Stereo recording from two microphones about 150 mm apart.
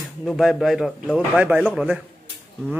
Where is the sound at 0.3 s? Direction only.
Centre (ahead or behind).